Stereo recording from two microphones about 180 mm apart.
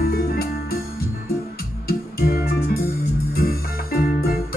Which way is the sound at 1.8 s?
55° left (ahead or behind).